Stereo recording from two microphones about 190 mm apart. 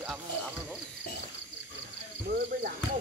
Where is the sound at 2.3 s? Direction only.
50° right (ahead or behind).